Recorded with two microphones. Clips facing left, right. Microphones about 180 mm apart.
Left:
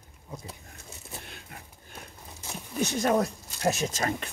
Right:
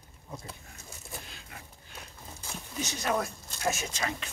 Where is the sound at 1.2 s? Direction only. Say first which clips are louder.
Left 2 dB; 55° left (ahead or behind).